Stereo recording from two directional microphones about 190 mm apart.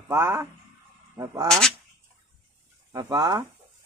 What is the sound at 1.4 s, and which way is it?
Speech, 5° left (ahead or behind).